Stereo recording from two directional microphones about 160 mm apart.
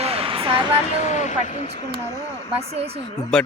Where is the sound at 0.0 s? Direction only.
40° right (ahead or behind).